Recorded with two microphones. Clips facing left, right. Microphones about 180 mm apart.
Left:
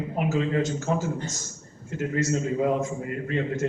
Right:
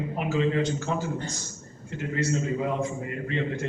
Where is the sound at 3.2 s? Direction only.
45° left (ahead or behind).